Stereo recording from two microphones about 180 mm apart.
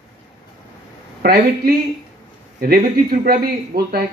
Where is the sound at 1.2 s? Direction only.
60° right (ahead or behind).